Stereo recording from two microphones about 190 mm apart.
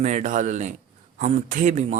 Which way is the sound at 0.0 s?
40° right (ahead or behind).